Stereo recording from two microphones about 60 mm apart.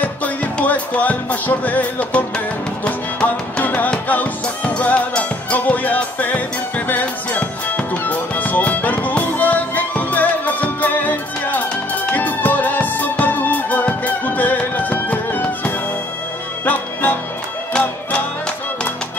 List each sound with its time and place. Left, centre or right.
0.0 s music: left